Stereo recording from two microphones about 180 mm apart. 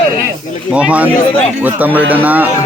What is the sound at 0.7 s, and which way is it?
Speech, 5° right (ahead or behind).